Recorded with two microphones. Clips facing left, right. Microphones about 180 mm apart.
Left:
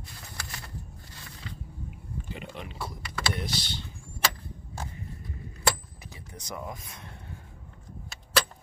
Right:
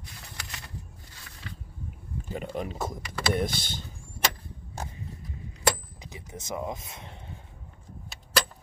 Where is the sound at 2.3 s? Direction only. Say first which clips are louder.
Right 10 dB; 40° right (ahead or behind).